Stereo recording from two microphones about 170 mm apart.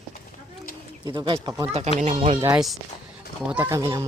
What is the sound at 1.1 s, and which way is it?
Speech, 30° right (ahead or behind).